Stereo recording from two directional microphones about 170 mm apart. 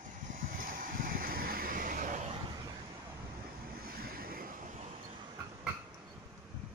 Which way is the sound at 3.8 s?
60° right (ahead or behind).